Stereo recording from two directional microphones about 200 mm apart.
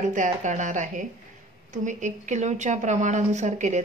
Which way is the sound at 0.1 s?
40° right (ahead or behind).